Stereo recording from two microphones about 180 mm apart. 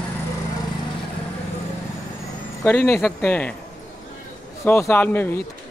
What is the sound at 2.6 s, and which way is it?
Speech, 10° left (ahead or behind).